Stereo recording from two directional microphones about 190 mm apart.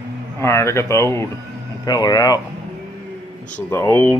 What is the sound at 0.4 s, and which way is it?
Speech, 15° left (ahead or behind).